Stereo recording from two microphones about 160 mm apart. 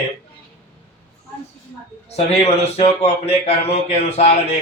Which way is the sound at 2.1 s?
40° left (ahead or behind).